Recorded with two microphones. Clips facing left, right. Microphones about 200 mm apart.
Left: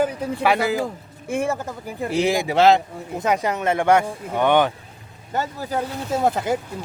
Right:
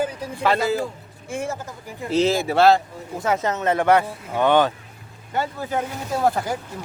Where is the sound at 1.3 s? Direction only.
60° left (ahead or behind).